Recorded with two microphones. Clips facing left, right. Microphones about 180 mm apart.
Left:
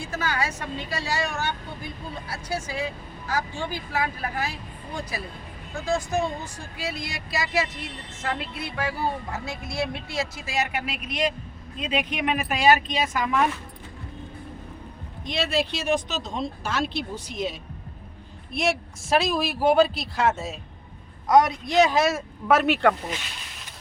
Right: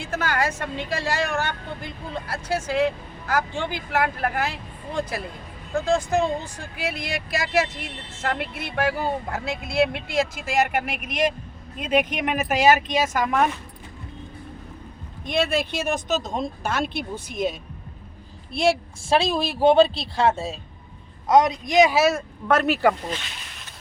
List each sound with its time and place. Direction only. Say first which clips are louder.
0.0 s speech: right 3 dB; 55° right (ahead or behind)
5.7 s speech: right 4 dB; 55° right (ahead or behind)
15.3 s speech: right 2 dB; 55° right (ahead or behind)
18.5 s a woman's voice: right 4 dB; 30° right (ahead or behind); by 23.0 s 5° right (ahead or behind)